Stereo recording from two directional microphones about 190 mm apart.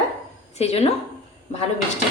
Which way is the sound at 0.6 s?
35° left (ahead or behind).